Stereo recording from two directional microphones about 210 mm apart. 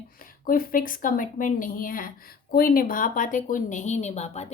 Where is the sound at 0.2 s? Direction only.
45° left (ahead or behind).